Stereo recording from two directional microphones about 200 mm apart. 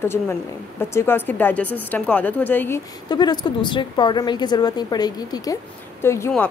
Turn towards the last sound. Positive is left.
turn(degrees=15)  # may be behind; listen again after turning